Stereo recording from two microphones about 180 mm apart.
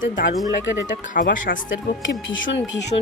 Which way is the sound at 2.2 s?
90° left.